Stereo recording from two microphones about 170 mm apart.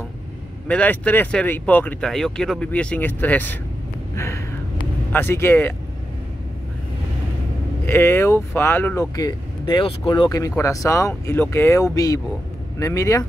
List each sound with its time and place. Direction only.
0.7 s speech: 10° left (ahead or behind)
4.1 s a sound: 15° left (ahead or behind)
5.1 s speech: 15° left (ahead or behind)
7.8 s speech: 15° left (ahead or behind)